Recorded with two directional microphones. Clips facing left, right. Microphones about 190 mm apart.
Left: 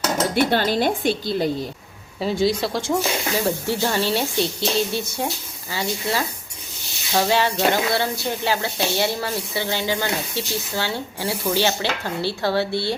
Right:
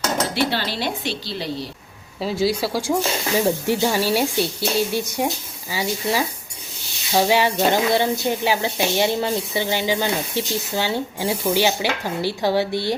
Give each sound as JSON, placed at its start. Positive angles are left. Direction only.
{"t": 0.3, "sound": "a woman's voice", "side_deg": 50}
{"t": 2.2, "sound": "speech", "side_deg": -5}